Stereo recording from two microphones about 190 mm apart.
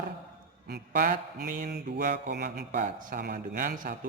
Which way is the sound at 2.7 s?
40° right (ahead or behind).